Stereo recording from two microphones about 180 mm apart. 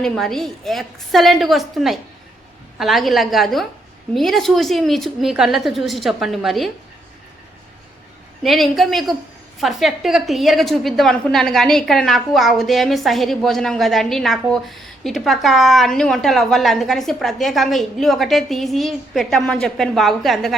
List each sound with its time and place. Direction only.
0.0 s a woman's voice: centre (ahead or behind)
8.4 s a woman's voice: centre (ahead or behind)